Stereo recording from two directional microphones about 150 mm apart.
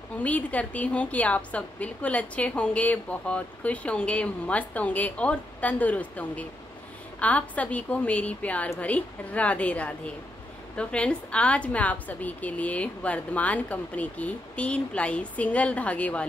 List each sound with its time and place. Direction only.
0.2 s a woman's voice: 10° left (ahead or behind)